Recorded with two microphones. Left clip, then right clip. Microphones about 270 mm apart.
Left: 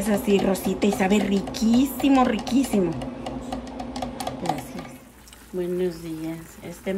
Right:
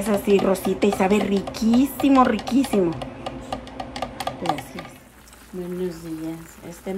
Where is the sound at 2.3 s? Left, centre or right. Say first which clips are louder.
Right 2 dB; left.